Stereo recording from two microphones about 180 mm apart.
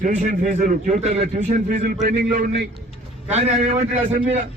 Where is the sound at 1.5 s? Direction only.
50° right (ahead or behind).